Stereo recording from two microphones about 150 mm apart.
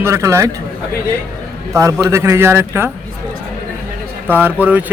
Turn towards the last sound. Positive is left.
turn(degrees=-10)  # may be behind; listen again after turning